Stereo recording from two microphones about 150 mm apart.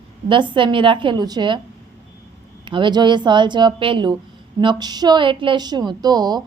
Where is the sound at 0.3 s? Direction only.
35° right (ahead or behind).